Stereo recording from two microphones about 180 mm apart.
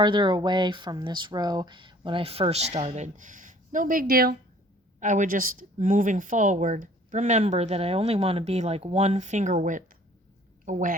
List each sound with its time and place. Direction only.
0.0 s speech: 25° right (ahead or behind); by 4.4 s 55° right (ahead or behind)
4.9 s a woman's voice: 45° right (ahead or behind)